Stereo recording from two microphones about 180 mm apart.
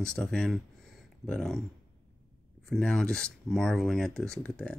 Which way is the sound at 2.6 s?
5° left (ahead or behind).